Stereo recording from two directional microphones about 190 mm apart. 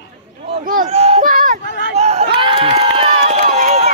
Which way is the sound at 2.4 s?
25° right (ahead or behind).